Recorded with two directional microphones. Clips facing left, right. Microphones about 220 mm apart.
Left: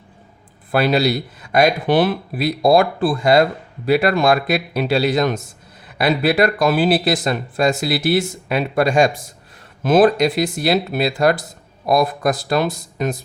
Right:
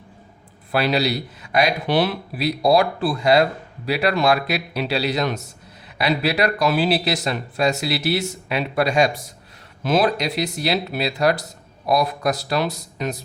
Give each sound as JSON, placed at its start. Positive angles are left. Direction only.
{"t": 0.7, "sound": "speech", "side_deg": 50}